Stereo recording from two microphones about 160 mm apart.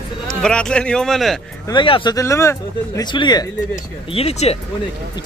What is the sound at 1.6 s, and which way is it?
Speech, 30° left (ahead or behind).